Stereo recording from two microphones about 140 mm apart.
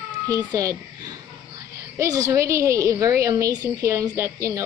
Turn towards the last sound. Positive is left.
turn(degrees=-20)  # may be behind; listen again after turning